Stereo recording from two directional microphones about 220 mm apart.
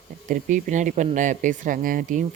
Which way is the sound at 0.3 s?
35° right (ahead or behind).